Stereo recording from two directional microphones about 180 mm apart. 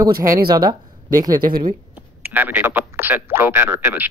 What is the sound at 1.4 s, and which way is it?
Speech, 50° right (ahead or behind).